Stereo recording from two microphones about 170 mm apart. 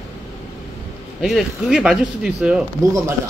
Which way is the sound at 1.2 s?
Centre (ahead or behind).